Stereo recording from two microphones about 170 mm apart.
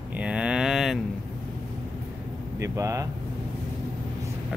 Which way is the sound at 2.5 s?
15° right (ahead or behind).